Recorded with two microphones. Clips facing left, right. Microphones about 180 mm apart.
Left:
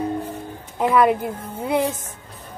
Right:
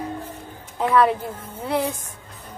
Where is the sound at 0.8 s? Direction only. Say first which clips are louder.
Left 1 dB; 10° left (ahead or behind).